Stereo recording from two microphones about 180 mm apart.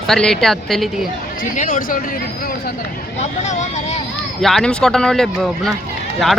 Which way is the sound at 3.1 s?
40° left (ahead or behind).